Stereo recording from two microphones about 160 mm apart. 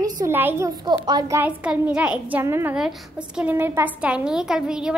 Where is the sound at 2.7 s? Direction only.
5° right (ahead or behind).